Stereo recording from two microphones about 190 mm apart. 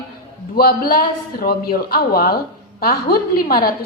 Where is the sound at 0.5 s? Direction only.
50° left (ahead or behind).